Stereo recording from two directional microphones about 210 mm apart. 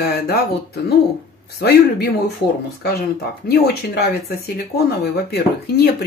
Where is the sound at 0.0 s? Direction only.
50° left (ahead or behind).